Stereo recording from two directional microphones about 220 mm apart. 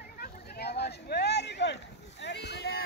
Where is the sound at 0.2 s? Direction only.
45° left (ahead or behind).